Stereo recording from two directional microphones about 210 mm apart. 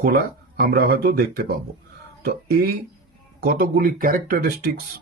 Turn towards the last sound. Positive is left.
turn(degrees=-40)  # may be behind; listen again after turning